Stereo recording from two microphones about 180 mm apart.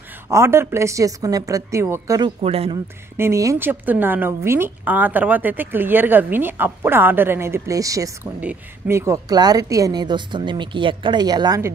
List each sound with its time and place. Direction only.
0.3 s a woman's voice: 15° right (ahead or behind)
2.4 s speech: 35° right (ahead or behind)
3.2 s a woman's voice: 15° right (ahead or behind)